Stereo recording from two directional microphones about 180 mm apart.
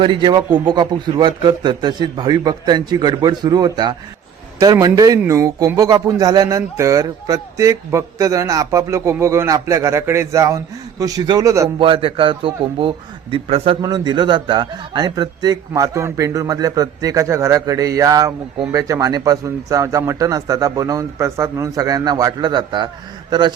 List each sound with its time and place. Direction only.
0.0 s a man's voice: 25° right (ahead or behind)
11.8 s a man's voice: 30° right (ahead or behind)